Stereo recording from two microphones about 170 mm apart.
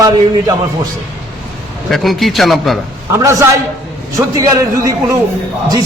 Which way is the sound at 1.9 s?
Centre (ahead or behind).